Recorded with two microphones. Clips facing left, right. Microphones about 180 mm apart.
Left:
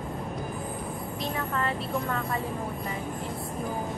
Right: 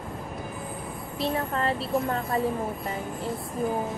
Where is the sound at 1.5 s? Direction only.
35° right (ahead or behind).